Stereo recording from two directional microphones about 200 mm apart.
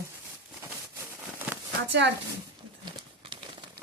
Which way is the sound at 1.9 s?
60° right (ahead or behind).